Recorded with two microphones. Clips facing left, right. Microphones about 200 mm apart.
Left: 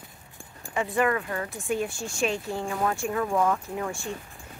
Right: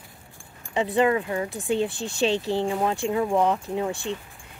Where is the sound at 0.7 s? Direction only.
25° right (ahead or behind).